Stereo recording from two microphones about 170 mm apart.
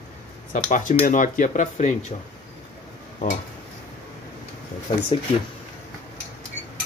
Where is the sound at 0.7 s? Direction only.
50° left (ahead or behind).